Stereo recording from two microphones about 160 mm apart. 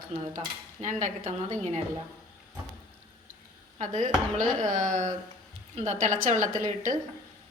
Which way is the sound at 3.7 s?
50° right (ahead or behind).